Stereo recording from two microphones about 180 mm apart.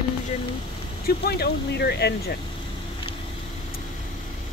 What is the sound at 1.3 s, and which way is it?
Speech, 65° left (ahead or behind).